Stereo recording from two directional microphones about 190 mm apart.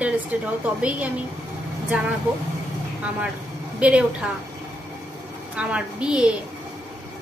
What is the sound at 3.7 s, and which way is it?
Speech, 5° right (ahead or behind).